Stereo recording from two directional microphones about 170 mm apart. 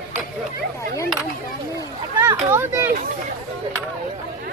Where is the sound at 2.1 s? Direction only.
15° right (ahead or behind).